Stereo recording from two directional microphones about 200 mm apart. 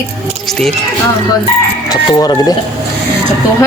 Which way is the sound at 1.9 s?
20° left (ahead or behind).